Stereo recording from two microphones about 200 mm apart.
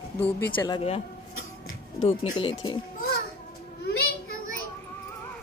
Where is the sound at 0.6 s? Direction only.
25° left (ahead or behind).